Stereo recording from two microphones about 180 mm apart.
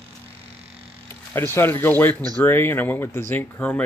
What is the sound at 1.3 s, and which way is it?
Speech, 15° left (ahead or behind).